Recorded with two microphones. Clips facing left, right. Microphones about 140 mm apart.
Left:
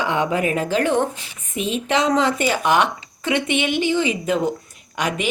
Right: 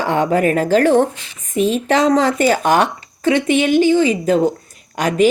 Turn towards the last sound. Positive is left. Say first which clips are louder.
# right 9 dB
turn(degrees=-40)  # may be behind; listen again after turning